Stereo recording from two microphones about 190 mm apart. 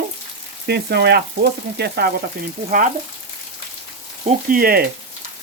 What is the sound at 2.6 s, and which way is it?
Frying, 45° right (ahead or behind).